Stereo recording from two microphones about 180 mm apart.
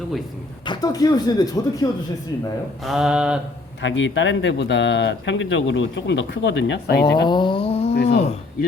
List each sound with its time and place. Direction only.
0.6 s speech: 20° left (ahead or behind)
2.8 s mantra: 5° right (ahead or behind)
3.8 s speech: 90° left
7.3 s a sound: 25° left (ahead or behind)
8.0 s speech: 35° left (ahead or behind)